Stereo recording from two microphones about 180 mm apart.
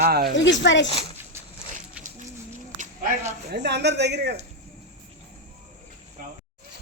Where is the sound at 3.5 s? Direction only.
70° right (ahead or behind).